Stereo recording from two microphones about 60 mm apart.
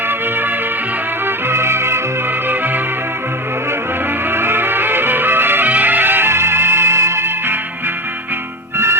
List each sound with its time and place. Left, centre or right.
0.1 s music: right
4.3 s music: right